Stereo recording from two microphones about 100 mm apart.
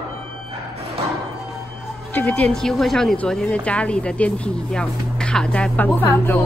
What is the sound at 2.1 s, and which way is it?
A woman's voice, 15° left (ahead or behind).